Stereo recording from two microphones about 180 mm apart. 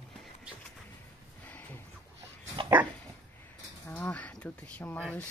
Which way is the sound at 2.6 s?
30° right (ahead or behind).